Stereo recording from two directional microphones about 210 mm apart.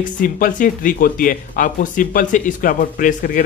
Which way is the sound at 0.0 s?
40° left (ahead or behind).